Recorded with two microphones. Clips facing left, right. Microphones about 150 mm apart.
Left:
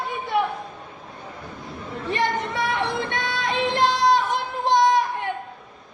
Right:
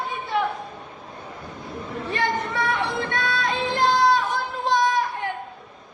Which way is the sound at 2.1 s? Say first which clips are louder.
Left 1 dB; 20° left (ahead or behind).